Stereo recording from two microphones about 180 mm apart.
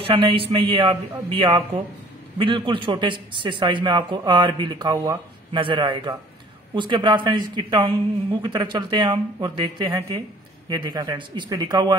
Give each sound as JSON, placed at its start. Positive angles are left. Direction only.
{"t": 0.0, "sound": "a man's voice", "side_deg": -30}